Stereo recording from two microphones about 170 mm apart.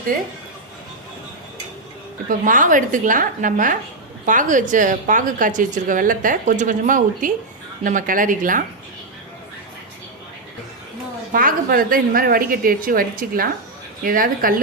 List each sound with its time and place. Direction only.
2.4 s a woman's voice: 50° right (ahead or behind)
11.3 s a woman's voice: 55° right (ahead or behind)